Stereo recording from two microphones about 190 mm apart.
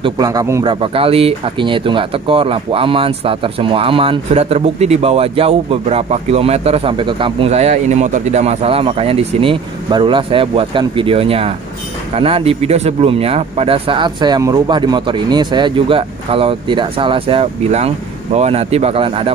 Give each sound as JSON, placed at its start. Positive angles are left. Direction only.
{"t": 0.0, "sound": "speech", "side_deg": -20}
{"t": 0.7, "sound": "speech", "side_deg": -30}